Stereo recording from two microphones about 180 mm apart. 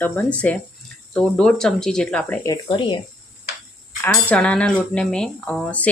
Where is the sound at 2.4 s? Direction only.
25° left (ahead or behind).